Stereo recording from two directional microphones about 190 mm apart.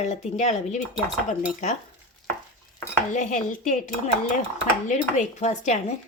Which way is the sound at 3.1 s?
40° left (ahead or behind).